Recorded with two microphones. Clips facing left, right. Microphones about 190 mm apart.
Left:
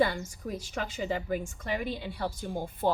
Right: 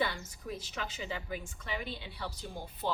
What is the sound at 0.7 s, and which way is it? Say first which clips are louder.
A woman's voice: left 11 dB; 45° left (ahead or behind).